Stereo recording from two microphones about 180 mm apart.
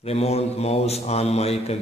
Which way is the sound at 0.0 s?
35° left (ahead or behind).